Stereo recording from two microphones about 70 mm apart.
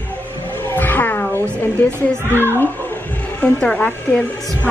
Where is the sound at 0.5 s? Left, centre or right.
Left.